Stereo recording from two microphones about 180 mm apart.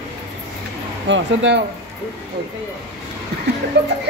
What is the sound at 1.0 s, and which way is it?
Speech, 90° right.